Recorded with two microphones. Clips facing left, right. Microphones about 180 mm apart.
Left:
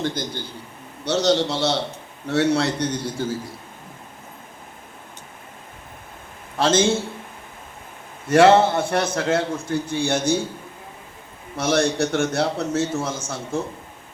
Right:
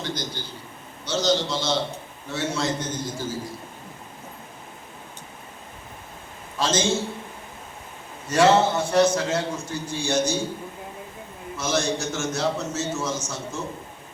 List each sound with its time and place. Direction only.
0.0 s a man's voice: 55° left (ahead or behind)
1.0 s a man's voice: 65° left (ahead or behind)
6.6 s a man's voice: 55° left (ahead or behind)
8.3 s a man's voice: 55° left (ahead or behind)
11.5 s a man's voice: 65° left (ahead or behind)